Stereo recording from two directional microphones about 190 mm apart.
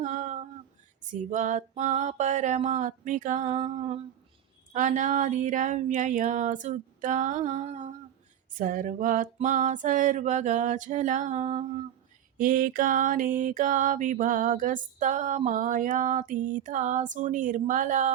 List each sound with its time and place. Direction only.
0.0 s a sound: 40° right (ahead or behind)
1.1 s speech: 40° right (ahead or behind)
12.4 s mantra: 45° right (ahead or behind)